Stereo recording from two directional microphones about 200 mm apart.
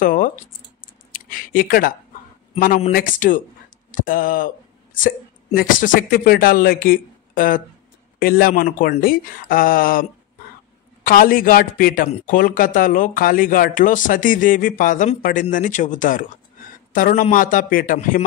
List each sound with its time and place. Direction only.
0.0 s a sound: 45° left (ahead or behind)
2.6 s speech: 45° left (ahead or behind)
11.1 s speech: 45° left (ahead or behind)